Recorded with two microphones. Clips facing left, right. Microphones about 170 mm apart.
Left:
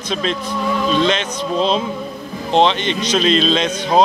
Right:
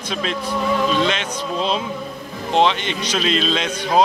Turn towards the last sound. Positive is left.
turn(degrees=25)  # may be behind; listen again after turning